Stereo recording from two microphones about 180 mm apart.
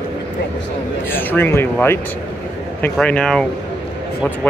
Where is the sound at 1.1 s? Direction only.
10° left (ahead or behind).